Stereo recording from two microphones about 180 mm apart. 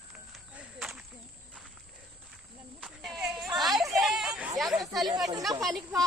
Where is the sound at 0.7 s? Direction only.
Centre (ahead or behind).